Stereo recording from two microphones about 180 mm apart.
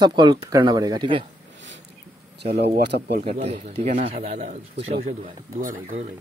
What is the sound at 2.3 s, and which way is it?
Speech, 65° right (ahead or behind).